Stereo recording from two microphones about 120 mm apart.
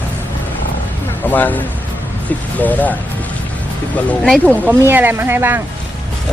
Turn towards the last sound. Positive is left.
turn(degrees=-20)  # may be behind; listen again after turning